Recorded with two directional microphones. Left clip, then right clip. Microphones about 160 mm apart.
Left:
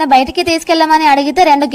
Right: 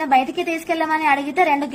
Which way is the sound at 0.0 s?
35° left (ahead or behind).